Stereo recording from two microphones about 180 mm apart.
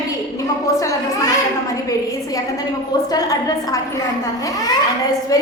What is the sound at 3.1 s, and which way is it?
Speech, 20° left (ahead or behind).